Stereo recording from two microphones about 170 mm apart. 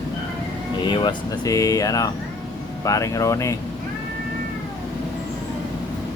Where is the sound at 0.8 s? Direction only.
30° left (ahead or behind).